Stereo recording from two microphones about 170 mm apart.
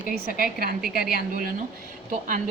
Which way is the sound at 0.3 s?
60° right (ahead or behind).